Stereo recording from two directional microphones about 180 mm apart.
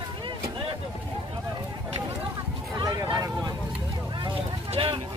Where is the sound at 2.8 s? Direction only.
20° right (ahead or behind).